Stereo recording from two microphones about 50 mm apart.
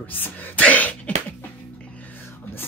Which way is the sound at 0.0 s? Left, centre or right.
Left.